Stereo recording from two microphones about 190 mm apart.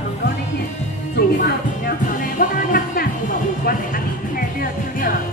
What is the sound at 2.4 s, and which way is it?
Music, 45° left (ahead or behind).